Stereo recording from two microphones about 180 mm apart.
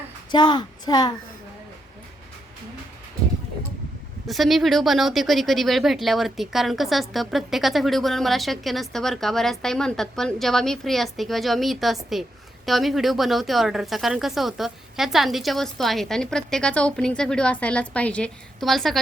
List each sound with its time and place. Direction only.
0.3 s speech: 25° left (ahead or behind)
4.3 s speech: centre (ahead or behind)